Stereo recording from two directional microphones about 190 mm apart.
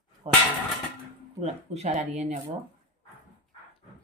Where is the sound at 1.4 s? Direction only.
35° right (ahead or behind).